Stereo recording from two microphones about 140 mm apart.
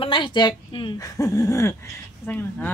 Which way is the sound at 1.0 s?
25° left (ahead or behind).